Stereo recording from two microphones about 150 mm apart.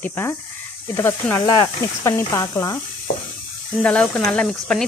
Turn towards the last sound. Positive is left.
turn(degrees=5)  # may be behind; listen again after turning